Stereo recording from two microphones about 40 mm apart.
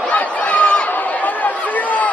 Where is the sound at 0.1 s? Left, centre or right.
Left.